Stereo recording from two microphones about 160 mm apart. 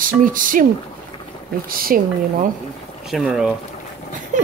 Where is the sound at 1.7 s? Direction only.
65° right (ahead or behind).